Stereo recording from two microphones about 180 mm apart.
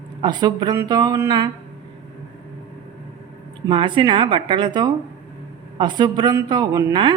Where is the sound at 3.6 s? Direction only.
25° right (ahead or behind).